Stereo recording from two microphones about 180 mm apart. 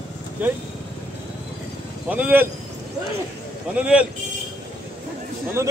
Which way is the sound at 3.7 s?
5° right (ahead or behind).